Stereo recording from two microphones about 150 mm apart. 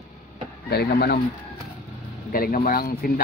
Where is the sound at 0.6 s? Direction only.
90° left.